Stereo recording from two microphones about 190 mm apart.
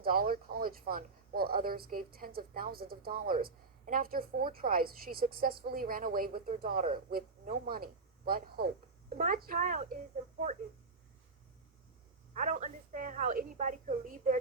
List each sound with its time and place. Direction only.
0.0 s speech: 50° right (ahead or behind)
12.3 s speech: 40° right (ahead or behind)